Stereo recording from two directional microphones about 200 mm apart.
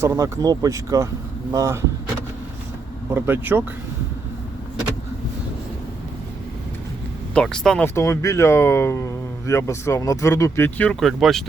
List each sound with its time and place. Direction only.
0.0 s speech: 15° right (ahead or behind)
3.1 s speech: 10° right (ahead or behind)
7.3 s speech: 5° left (ahead or behind)
7.9 s speech: 15° left (ahead or behind)